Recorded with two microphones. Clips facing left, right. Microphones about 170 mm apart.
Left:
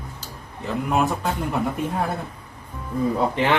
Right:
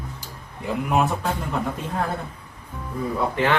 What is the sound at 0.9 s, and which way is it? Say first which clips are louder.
Speech: even; centre (ahead or behind).